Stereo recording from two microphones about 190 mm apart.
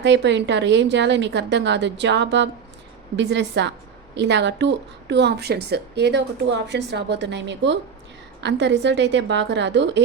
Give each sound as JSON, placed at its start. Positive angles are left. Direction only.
{"t": 0.0, "sound": "a woman's voice", "side_deg": -65}